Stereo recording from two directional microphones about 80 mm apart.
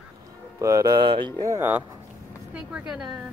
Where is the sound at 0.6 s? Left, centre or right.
Right.